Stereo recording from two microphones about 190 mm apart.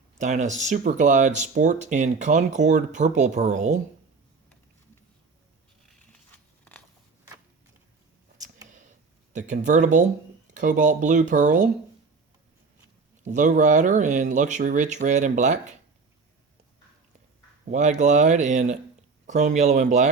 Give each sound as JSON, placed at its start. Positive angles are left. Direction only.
{"t": 0.2, "sound": "speech", "side_deg": -40}
{"t": 6.3, "sound": "biting", "side_deg": 10}
{"t": 9.3, "sound": "speech", "side_deg": -40}
{"t": 13.2, "sound": "speech", "side_deg": -40}
{"t": 17.7, "sound": "speech", "side_deg": -40}